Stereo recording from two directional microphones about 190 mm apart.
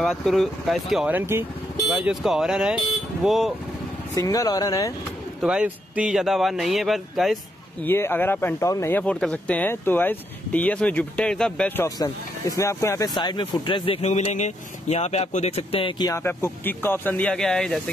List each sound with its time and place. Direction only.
0.0 s speech: centre (ahead or behind)
4.1 s speech: 15° left (ahead or behind)
5.4 s speech: 5° right (ahead or behind)
7.8 s speech: 10° left (ahead or behind)